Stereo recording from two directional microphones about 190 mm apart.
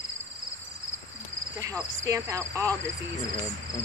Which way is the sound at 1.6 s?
15° right (ahead or behind).